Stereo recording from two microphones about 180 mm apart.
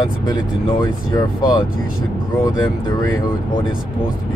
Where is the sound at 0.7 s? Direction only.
20° left (ahead or behind).